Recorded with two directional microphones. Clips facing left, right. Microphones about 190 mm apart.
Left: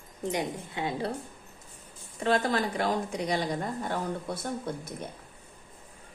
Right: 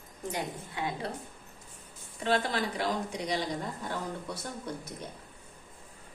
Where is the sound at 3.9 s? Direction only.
55° left (ahead or behind).